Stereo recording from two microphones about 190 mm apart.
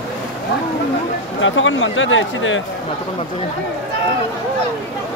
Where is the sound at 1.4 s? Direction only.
90° left.